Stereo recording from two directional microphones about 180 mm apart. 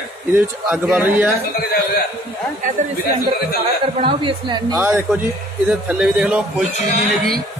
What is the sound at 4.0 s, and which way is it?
Speech, 30° right (ahead or behind).